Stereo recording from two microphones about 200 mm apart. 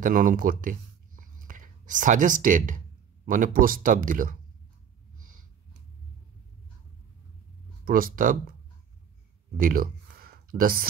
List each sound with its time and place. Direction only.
0.0 s speech: 45° right (ahead or behind)
7.8 s speech: 45° right (ahead or behind)
9.6 s speech: 45° right (ahead or behind)